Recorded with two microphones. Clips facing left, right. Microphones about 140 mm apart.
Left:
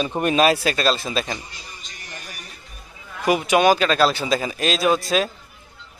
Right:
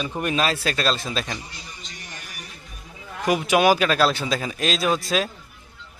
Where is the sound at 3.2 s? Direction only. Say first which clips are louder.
Left 2 dB; centre (ahead or behind).